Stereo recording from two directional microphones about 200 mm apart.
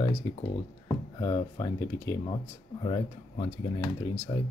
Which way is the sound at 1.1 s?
20° left (ahead or behind).